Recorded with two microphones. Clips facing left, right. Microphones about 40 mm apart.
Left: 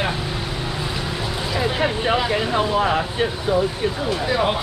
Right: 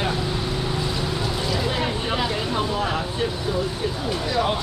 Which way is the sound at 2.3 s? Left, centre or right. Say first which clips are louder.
Left 4 dB; left.